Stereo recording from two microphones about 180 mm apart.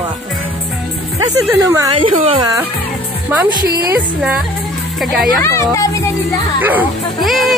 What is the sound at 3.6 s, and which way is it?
Speech, 60° right (ahead or behind).